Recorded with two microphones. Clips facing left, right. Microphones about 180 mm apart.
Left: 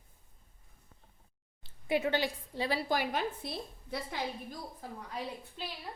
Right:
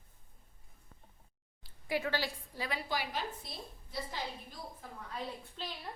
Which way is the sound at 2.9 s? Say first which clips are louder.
Left 5 dB; 55° left (ahead or behind).